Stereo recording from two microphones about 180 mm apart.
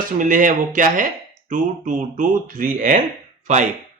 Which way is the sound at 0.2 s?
45° right (ahead or behind).